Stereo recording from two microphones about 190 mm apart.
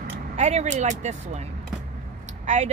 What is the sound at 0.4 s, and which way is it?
Speech, 35° right (ahead or behind).